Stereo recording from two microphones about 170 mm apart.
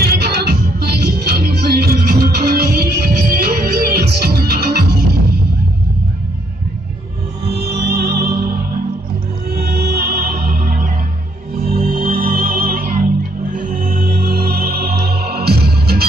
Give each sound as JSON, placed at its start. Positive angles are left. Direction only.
{"t": 0.0, "sound": "music", "side_deg": -65}
{"t": 7.5, "sound": "music", "side_deg": -70}
{"t": 9.6, "sound": "music", "side_deg": -70}